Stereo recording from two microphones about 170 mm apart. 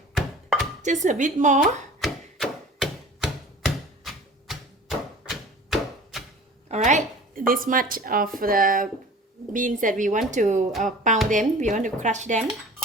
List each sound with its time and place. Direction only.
0.8 s speech: 45° right (ahead or behind)
1.6 s chopping: centre (ahead or behind)
4.0 s a sound: centre (ahead or behind)
6.7 s a woman's voice: 45° right (ahead or behind)
10.7 s speech: centre (ahead or behind)
11.3 s speech: 45° right (ahead or behind)